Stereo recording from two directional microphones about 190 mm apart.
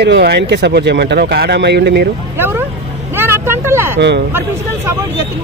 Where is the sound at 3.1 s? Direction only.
10° right (ahead or behind).